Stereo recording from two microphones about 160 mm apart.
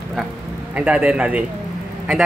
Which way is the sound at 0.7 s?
5° right (ahead or behind).